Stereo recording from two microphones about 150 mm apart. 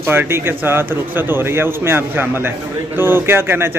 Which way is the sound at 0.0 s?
15° right (ahead or behind).